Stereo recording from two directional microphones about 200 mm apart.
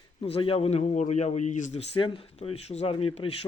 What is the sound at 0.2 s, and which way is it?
A man's voice, 30° left (ahead or behind).